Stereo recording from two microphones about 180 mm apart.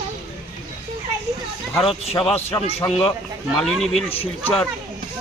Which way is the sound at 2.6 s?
35° left (ahead or behind).